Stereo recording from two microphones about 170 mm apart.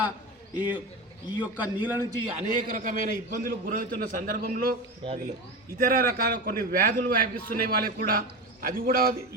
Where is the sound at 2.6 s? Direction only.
55° right (ahead or behind).